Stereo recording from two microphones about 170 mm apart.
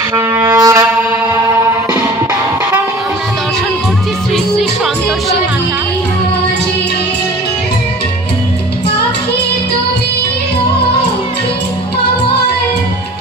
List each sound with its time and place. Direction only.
0.1 s wind instrument: 20° right (ahead or behind)